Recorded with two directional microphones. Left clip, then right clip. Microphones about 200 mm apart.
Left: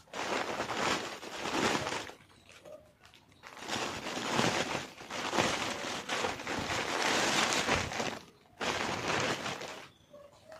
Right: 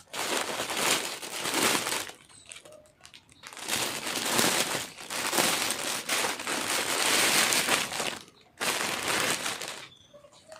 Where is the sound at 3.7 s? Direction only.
Centre (ahead or behind).